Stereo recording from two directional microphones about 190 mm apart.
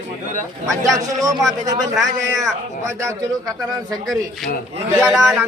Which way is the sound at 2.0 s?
Centre (ahead or behind).